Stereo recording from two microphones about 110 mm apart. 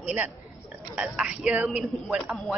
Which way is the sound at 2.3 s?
25° right (ahead or behind).